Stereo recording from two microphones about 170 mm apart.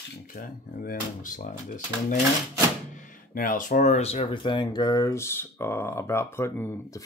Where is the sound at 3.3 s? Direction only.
50° left (ahead or behind).